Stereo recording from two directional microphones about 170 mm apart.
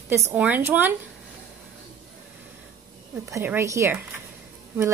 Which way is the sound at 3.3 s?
15° right (ahead or behind).